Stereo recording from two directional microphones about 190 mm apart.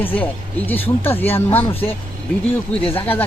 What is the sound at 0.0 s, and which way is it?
Speech, 10° left (ahead or behind).